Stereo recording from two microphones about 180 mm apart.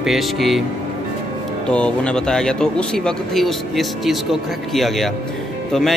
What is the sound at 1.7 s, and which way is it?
Mantra, 5° left (ahead or behind).